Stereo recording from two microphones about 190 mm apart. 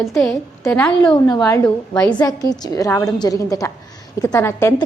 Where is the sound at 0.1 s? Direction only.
Centre (ahead or behind).